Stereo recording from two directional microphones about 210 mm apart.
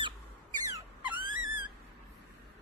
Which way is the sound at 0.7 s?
15° right (ahead or behind).